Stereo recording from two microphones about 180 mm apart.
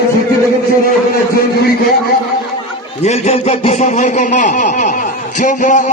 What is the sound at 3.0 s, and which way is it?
Speech, 35° left (ahead or behind).